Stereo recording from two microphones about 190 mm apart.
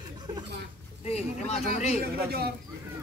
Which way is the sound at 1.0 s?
35° left (ahead or behind).